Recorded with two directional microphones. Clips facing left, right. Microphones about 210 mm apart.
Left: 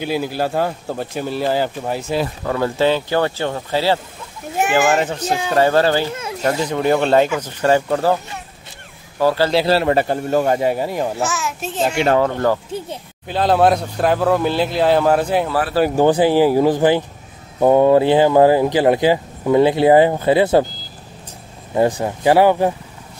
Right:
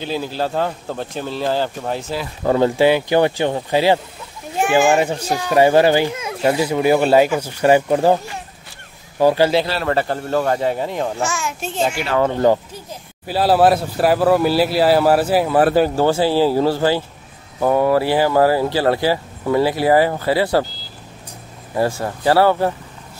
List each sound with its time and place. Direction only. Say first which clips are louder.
0.0 s speech: left 2 dB; 10° left (ahead or behind)
2.4 s speech: right 5 dB; 25° right (ahead or behind)
2.8 s speech: left 1 dB; 15° right (ahead or behind)
9.2 s speech: right 2 dB; 15° right (ahead or behind)
9.8 s speech: left 3 dB; 15° left (ahead or behind); by 11.9 s centre (ahead or behind)
12.2 s speech: right 2 dB; 15° right (ahead or behind)
13.3 s speech: right 1 dB; 5° right (ahead or behind)
16.0 s speech: left 2 dB; 15° left (ahead or behind)
21.7 s speech: left 3 dB; 20° left (ahead or behind)